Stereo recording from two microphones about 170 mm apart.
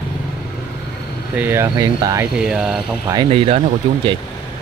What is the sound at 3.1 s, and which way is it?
Speech, 30° right (ahead or behind).